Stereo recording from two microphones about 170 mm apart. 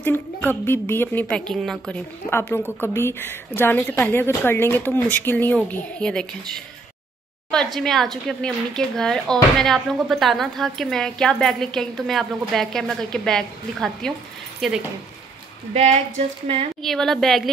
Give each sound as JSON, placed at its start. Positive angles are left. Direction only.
{"t": 0.0, "sound": "a woman's voice", "side_deg": 10}
{"t": 15.7, "sound": "speech", "side_deg": -40}
{"t": 16.8, "sound": "a woman's voice", "side_deg": 0}